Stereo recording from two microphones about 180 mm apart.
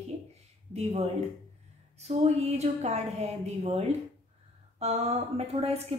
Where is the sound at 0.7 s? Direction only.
35° right (ahead or behind).